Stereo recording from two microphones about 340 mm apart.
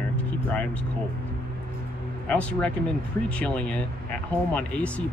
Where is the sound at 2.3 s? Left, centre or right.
Centre.